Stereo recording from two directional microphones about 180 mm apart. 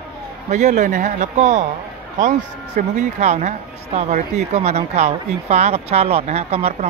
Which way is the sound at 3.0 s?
40° right (ahead or behind).